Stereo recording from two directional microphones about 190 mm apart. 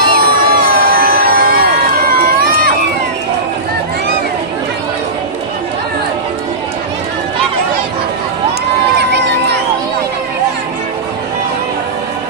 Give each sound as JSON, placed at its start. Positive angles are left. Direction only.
{"t": 0.1, "sound": "crowd", "side_deg": -50}
{"t": 9.0, "sound": "crowd", "side_deg": -65}